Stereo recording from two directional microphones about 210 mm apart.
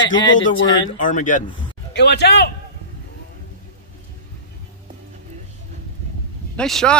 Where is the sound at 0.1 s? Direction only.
20° left (ahead or behind).